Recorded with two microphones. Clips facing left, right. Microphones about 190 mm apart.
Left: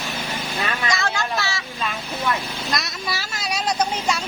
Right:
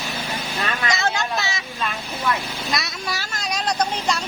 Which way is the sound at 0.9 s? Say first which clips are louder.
Right 3 dB; 20° right (ahead or behind).